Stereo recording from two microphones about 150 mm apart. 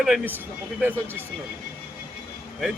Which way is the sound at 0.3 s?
15° right (ahead or behind).